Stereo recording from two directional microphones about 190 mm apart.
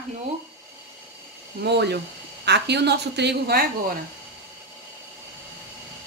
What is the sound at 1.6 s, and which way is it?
A woman's voice, 60° right (ahead or behind).